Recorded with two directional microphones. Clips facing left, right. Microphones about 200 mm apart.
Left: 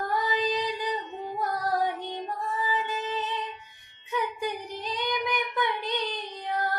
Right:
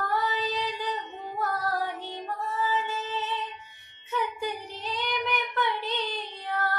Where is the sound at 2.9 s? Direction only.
15° left (ahead or behind).